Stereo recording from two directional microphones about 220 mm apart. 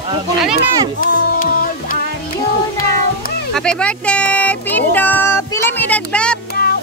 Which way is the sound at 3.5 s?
5° left (ahead or behind).